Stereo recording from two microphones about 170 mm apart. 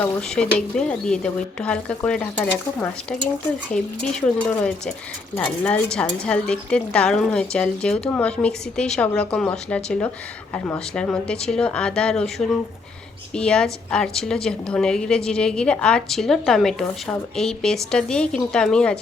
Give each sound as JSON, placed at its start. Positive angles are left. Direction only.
{"t": 0.0, "sound": "a woman's voice", "side_deg": 5}